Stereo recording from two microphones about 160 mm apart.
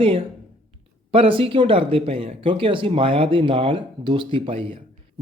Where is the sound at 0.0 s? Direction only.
35° right (ahead or behind).